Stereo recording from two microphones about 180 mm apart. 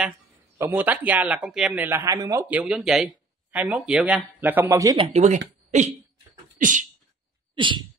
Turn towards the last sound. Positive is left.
turn(degrees=-25)  # may be behind; listen again after turning